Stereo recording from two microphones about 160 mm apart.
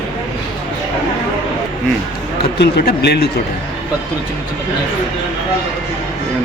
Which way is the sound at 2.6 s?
85° left.